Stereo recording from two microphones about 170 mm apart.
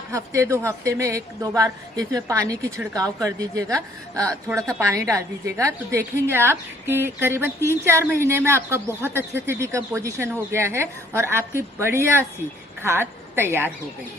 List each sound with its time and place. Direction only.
0.1 s a woman's voice: 20° right (ahead or behind)